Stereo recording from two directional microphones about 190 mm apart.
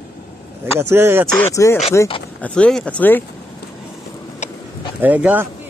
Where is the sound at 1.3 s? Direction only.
15° left (ahead or behind).